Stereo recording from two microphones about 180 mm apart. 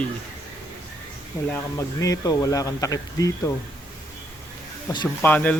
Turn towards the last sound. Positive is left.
turn(degrees=10)  # may be behind; listen again after turning